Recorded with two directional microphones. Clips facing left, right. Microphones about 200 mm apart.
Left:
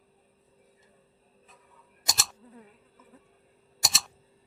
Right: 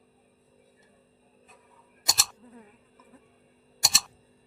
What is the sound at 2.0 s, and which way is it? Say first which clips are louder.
Insect: even; centre (ahead or behind).